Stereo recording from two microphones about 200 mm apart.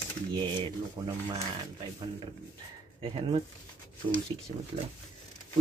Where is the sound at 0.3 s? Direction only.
20° right (ahead or behind).